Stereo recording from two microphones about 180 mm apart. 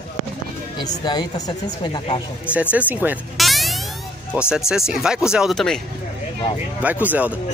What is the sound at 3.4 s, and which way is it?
Music, centre (ahead or behind).